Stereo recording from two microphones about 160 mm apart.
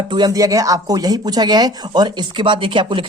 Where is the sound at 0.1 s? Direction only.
25° right (ahead or behind).